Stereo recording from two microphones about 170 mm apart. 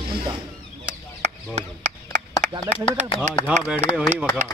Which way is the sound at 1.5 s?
45° right (ahead or behind).